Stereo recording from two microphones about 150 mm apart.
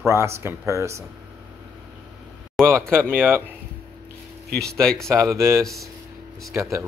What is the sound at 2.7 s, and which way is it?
Speech, 5° left (ahead or behind).